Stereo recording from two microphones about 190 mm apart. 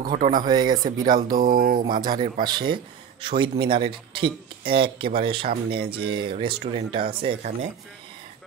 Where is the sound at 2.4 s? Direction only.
25° right (ahead or behind).